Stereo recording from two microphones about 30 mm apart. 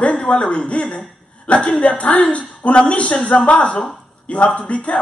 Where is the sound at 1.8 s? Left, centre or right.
Left.